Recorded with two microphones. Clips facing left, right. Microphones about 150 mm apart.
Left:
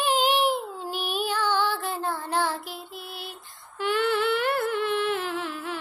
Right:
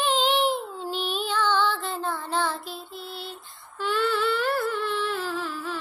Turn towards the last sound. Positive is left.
turn(degrees=20)  # may be behind; listen again after turning